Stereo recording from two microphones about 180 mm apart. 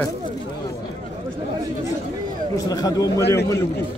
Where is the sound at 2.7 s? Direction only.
20° left (ahead or behind).